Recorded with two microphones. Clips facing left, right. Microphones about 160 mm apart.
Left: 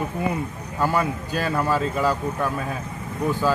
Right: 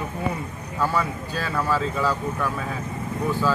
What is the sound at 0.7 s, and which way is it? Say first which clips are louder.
Speech: left 2 dB; 15° left (ahead or behind).